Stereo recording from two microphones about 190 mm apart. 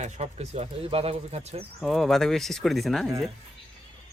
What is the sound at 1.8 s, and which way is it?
Speech, centre (ahead or behind).